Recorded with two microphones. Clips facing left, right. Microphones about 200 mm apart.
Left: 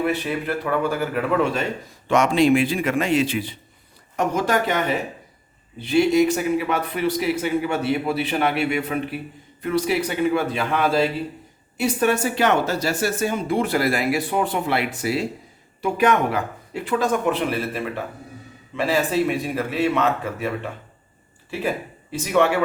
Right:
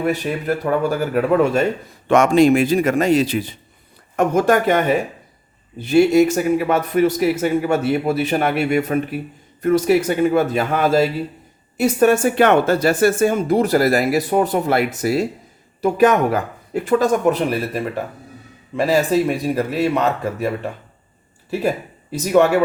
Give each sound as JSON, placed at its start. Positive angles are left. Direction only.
{"t": 0.0, "sound": "a man's voice", "side_deg": -40}
{"t": 4.2, "sound": "a man's voice", "side_deg": -50}
{"t": 22.1, "sound": "a man's voice", "side_deg": -40}